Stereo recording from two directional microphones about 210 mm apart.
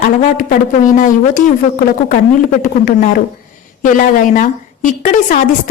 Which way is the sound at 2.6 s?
40° left (ahead or behind).